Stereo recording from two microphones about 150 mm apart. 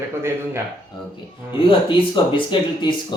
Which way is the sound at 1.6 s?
35° left (ahead or behind).